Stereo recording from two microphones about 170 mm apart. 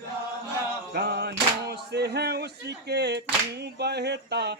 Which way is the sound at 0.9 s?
70° right (ahead or behind).